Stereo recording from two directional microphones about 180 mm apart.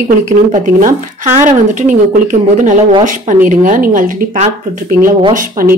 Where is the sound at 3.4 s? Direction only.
45° right (ahead or behind).